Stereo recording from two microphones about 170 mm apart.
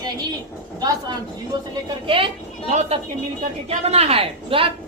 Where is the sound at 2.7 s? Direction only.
40° right (ahead or behind).